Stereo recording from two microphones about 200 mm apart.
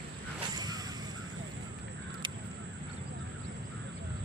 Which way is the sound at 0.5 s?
20° right (ahead or behind).